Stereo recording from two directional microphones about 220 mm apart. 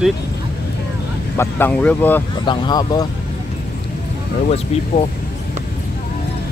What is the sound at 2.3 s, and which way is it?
Speech, 20° left (ahead or behind).